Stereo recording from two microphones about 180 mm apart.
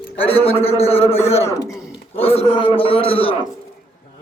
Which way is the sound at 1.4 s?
15° left (ahead or behind).